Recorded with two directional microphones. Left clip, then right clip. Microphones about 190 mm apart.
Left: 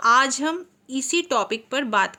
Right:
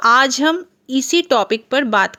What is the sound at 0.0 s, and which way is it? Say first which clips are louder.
Speech: right 5 dB; 40° right (ahead or behind).